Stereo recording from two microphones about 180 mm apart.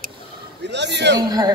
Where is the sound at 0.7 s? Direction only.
75° right (ahead or behind).